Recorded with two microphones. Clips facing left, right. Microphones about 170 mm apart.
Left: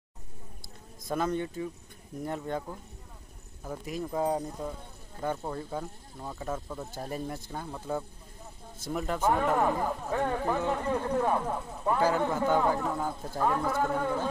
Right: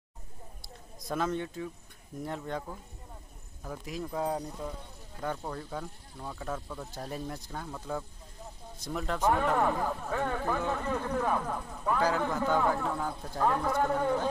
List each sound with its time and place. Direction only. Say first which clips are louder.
1.0 s a man's voice: left 2 dB; centre (ahead or behind)
3.6 s a man's voice: left 2 dB; 5° left (ahead or behind)
10.0 s speech: left 2 dB; 20° left (ahead or behind)
11.0 s speech: left 3 dB; 25° left (ahead or behind)
12.4 s a man's voice: left 1 dB; 5° left (ahead or behind)